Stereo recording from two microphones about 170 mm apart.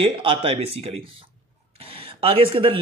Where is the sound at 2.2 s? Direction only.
35° right (ahead or behind).